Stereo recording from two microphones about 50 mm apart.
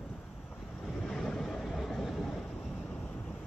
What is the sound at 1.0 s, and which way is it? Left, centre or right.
Vehicle, centre.